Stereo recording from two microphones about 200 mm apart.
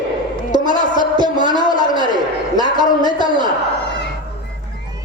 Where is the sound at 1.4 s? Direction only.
20° left (ahead or behind).